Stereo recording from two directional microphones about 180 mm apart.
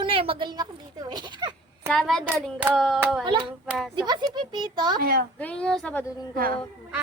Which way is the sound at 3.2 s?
30° right (ahead or behind).